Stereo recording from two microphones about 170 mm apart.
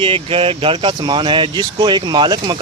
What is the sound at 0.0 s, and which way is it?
Speech, 35° right (ahead or behind).